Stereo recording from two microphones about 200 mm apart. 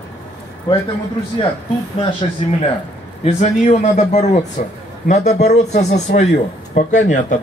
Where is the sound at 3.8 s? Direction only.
35° left (ahead or behind).